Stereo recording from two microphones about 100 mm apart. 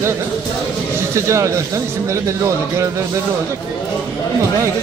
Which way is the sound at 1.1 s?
30° right (ahead or behind).